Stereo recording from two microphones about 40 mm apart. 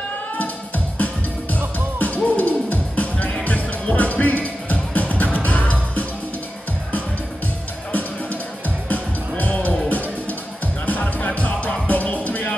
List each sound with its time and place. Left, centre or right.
0.9 s music: left
7.9 s music: left